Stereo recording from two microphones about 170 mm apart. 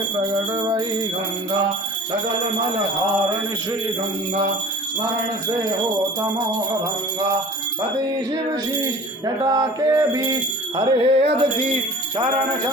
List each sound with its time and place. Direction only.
0.5 s mantra: 25° right (ahead or behind)
9.2 s mantra: 25° right (ahead or behind)
10.8 s music: 30° right (ahead or behind)